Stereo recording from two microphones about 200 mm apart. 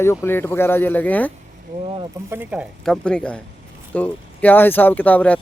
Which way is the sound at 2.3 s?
10° right (ahead or behind).